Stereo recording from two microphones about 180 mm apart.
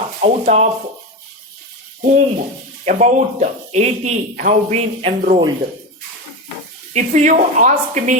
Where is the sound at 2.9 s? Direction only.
40° right (ahead or behind).